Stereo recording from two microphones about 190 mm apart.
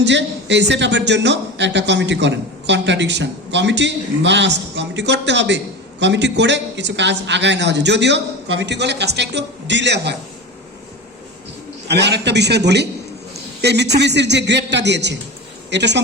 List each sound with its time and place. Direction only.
0.0 s a man's voice: 65° right (ahead or behind)
11.9 s a man's voice: 65° right (ahead or behind)